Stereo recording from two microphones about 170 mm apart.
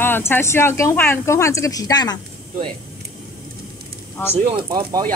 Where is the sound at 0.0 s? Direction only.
15° left (ahead or behind).